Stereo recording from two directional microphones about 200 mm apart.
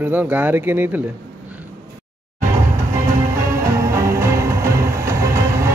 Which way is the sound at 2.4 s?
15° right (ahead or behind).